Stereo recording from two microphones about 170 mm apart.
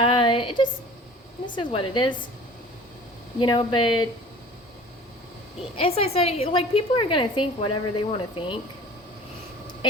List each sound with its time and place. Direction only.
0.0 s a sound: 30° left (ahead or behind)
1.5 s speech: 30° left (ahead or behind)
3.4 s speech: 30° left (ahead or behind)
5.7 s a woman's voice: 35° left (ahead or behind)